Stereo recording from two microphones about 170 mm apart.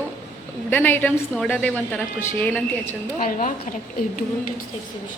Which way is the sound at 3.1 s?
55° left (ahead or behind).